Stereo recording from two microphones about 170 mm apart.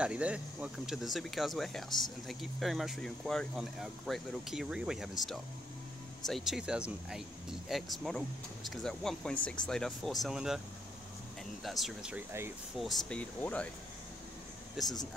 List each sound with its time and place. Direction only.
0.0 s speech: 5° right (ahead or behind)
1.9 s speech: 25° left (ahead or behind)
2.2 s speech: centre (ahead or behind)
6.2 s speech: centre (ahead or behind)
11.6 s speech: centre (ahead or behind)
12.7 s speech: centre (ahead or behind)
14.8 s speech: centre (ahead or behind)